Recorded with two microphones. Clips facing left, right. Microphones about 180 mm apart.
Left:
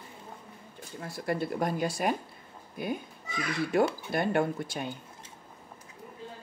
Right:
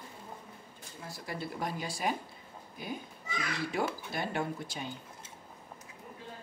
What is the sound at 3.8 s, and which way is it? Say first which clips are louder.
Speech: left 7 dB; 55° left (ahead or behind).